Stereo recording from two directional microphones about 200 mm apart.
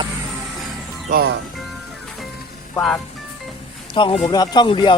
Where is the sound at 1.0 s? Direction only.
45° right (ahead or behind).